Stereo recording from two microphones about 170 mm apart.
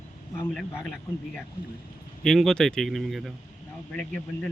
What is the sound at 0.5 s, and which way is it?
Speech, 5° left (ahead or behind).